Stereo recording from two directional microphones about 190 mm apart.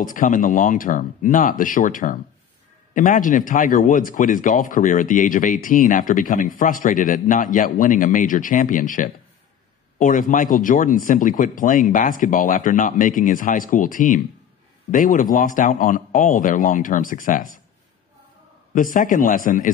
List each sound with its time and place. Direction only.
0.0 s speech: 45° left (ahead or behind)
18.8 s speech: 45° left (ahead or behind)